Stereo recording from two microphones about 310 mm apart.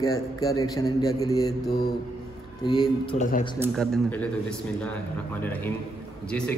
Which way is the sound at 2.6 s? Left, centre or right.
Centre.